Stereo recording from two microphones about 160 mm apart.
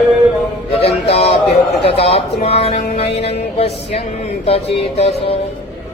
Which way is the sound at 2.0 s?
40° left (ahead or behind).